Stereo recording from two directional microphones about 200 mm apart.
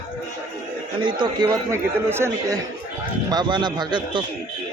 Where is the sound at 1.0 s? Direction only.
20° right (ahead or behind).